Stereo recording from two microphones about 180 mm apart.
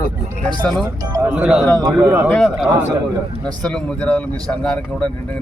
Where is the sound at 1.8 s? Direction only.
25° right (ahead or behind).